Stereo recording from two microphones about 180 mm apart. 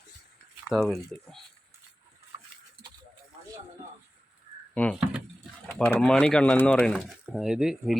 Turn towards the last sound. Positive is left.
turn(degrees=0)  # may be behind; listen again after turning